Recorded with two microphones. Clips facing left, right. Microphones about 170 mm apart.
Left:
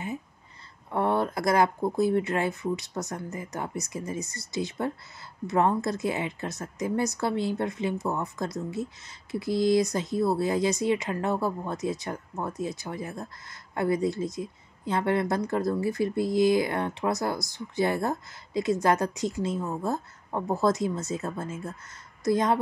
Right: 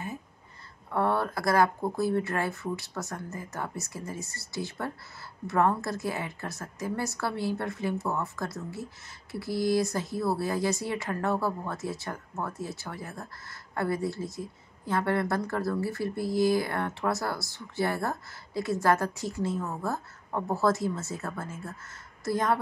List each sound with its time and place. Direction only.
0.9 s speech: 20° left (ahead or behind)